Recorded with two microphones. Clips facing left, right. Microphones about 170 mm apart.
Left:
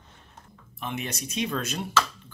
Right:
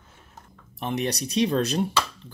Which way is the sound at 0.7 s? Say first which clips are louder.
Right 6 dB; 40° right (ahead or behind).